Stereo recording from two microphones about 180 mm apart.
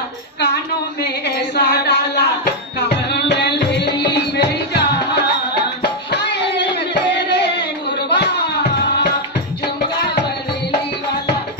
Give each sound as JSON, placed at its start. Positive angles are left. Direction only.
{"t": 1.0, "sound": "a sound", "side_deg": 70}
{"t": 3.1, "sound": "music", "side_deg": 75}
{"t": 6.1, "sound": "music", "side_deg": 75}